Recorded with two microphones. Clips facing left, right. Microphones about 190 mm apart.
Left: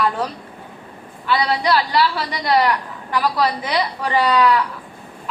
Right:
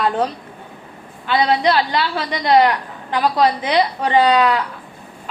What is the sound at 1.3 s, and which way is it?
A woman's voice, 25° right (ahead or behind).